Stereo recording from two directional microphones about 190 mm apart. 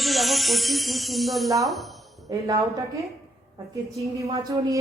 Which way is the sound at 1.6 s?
Centre (ahead or behind).